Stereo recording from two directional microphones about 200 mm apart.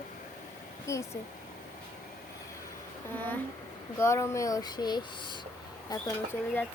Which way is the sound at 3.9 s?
15° left (ahead or behind).